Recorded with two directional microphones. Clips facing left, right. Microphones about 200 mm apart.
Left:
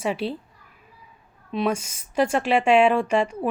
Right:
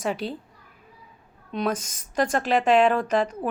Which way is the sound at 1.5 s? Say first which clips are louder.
Left 2 dB; 5° left (ahead or behind).